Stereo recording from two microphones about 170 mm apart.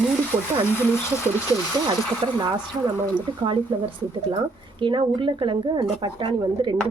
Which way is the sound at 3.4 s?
30° right (ahead or behind).